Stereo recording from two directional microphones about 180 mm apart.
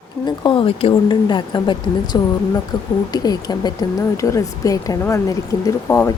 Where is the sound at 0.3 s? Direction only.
25° left (ahead or behind).